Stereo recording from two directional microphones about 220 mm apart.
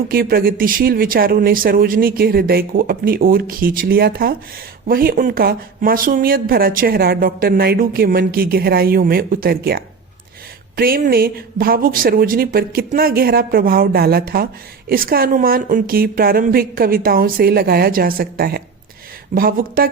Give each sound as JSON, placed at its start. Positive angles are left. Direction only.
{"t": 0.1, "sound": "speech", "side_deg": -45}